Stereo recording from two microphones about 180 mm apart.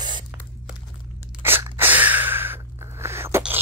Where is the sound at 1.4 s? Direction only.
15° right (ahead or behind).